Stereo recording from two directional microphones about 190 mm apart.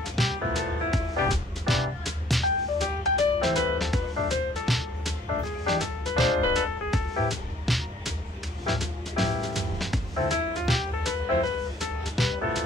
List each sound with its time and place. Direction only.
0.0 s music: centre (ahead or behind)